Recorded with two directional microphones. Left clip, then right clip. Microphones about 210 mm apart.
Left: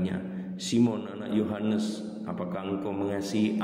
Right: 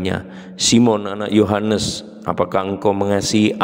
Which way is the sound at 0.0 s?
50° right (ahead or behind).